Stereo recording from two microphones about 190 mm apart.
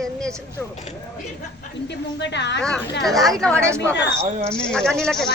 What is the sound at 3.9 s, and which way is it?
Speech, 65° left (ahead or behind).